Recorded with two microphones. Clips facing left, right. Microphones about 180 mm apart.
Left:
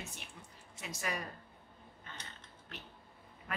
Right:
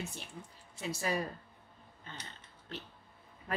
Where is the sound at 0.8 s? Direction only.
30° right (ahead or behind).